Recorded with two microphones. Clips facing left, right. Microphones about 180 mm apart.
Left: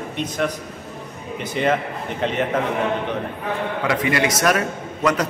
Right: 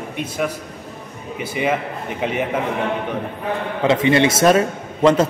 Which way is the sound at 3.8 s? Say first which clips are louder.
Right 7 dB; 25° right (ahead or behind).